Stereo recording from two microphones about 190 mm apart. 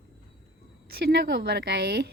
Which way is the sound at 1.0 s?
55° right (ahead or behind).